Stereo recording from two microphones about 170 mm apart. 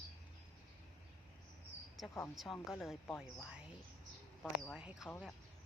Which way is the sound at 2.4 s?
Centre (ahead or behind).